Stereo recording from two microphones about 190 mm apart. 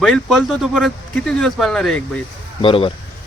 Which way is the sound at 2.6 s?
30° left (ahead or behind).